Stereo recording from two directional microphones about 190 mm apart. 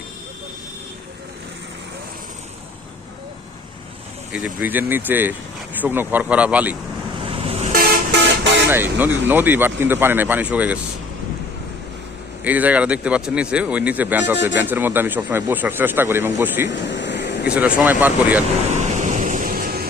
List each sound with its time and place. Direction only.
4.3 s speech: 5° right (ahead or behind)
7.3 s vehicle: 30° right (ahead or behind)
8.7 s speech: 10° right (ahead or behind)
12.5 s speech: 10° right (ahead or behind)
16.6 s air conditioning: 70° left (ahead or behind)
17.5 s speech: 10° right (ahead or behind)
18.7 s vehicle: 40° right (ahead or behind)